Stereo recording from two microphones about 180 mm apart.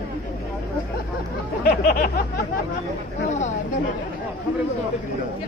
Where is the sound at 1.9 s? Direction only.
55° left (ahead or behind).